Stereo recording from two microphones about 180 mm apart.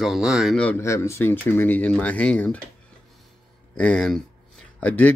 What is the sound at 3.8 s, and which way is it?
Speech, 5° left (ahead or behind).